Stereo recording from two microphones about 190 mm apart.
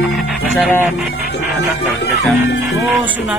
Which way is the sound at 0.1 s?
5° left (ahead or behind).